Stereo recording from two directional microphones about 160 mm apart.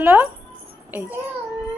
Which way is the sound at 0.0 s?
10° right (ahead or behind).